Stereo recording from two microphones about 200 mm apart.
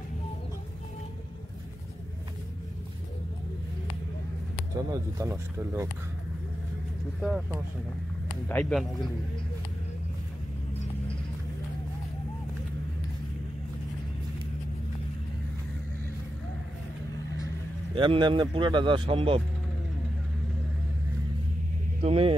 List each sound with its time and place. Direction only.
4.7 s speech: 15° right (ahead or behind)
7.2 s speech: centre (ahead or behind)
8.5 s speech: 10° left (ahead or behind)
17.9 s speech: 25° right (ahead or behind)
22.0 s speech: 30° right (ahead or behind)